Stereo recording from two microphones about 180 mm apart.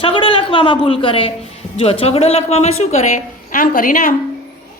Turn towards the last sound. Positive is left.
turn(degrees=50)  # may be behind; listen again after turning